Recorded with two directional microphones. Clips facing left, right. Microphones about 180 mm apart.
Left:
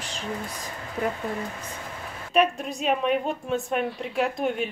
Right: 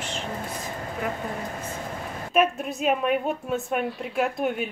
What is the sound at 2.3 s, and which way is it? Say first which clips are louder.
A woman's voice: even; 5° right (ahead or behind).